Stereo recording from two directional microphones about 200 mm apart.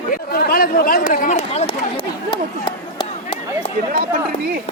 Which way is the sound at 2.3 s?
25° left (ahead or behind).